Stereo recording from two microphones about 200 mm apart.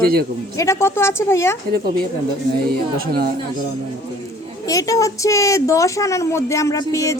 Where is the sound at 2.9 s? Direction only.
50° right (ahead or behind).